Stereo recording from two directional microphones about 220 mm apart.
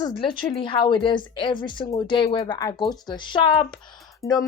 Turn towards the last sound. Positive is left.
turn(degrees=0)  # may be behind; listen again after turning